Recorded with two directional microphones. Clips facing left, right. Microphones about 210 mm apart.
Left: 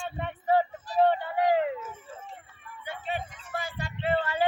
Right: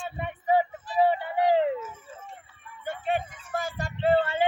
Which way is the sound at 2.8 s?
50° right (ahead or behind).